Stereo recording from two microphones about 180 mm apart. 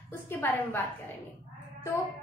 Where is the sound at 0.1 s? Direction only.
10° left (ahead or behind).